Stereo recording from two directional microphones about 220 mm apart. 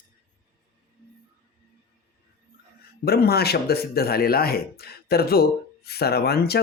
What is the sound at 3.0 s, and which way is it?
Speech, 45° left (ahead or behind).